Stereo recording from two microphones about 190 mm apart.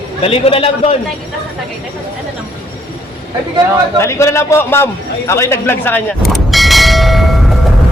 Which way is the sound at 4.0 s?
15° left (ahead or behind).